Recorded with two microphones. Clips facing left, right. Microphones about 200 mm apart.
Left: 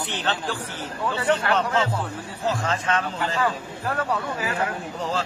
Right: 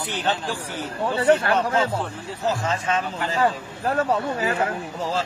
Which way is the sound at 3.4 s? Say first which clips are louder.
Right 7 dB; 25° right (ahead or behind).